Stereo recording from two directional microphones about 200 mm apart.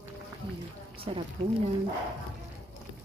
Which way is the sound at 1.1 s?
25° right (ahead or behind).